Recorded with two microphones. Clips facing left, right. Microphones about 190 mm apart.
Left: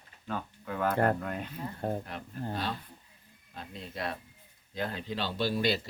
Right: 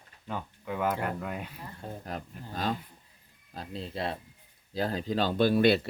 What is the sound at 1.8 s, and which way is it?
Speech, 60° left (ahead or behind).